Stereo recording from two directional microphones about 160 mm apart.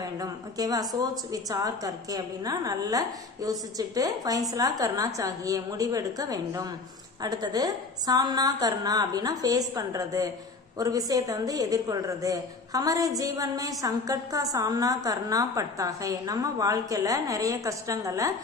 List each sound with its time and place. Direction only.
0.0 s a woman's voice: 25° right (ahead or behind)